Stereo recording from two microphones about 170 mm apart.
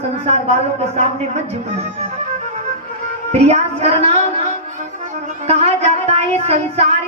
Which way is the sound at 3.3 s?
40° right (ahead or behind).